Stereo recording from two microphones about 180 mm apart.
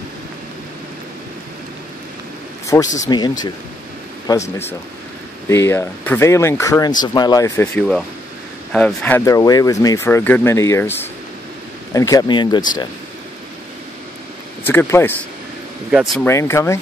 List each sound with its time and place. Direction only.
2.6 s a sound: 15° left (ahead or behind)
3.0 s speech: 25° left (ahead or behind)
5.5 s speech: 15° left (ahead or behind)
14.7 s speech: 15° left (ahead or behind)
15.9 s speech: centre (ahead or behind)
16.3 s speech: 15° left (ahead or behind)